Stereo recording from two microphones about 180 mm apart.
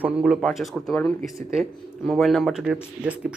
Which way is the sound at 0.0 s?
5° right (ahead or behind).